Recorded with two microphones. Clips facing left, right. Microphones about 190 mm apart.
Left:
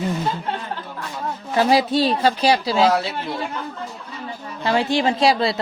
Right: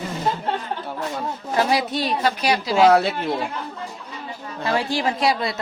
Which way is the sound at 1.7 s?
30° left (ahead or behind).